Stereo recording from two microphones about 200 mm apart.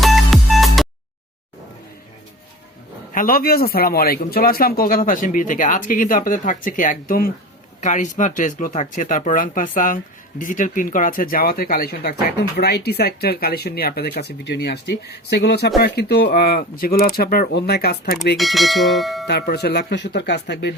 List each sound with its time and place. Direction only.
0.0 s music: centre (ahead or behind)
3.2 s speech: 45° left (ahead or behind)
18.3 s bell: centre (ahead or behind)
19.3 s speech: 55° left (ahead or behind)